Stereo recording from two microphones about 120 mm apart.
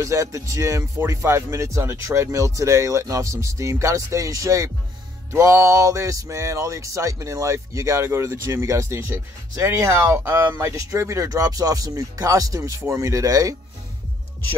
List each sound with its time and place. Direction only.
0.0 s speech: 25° right (ahead or behind)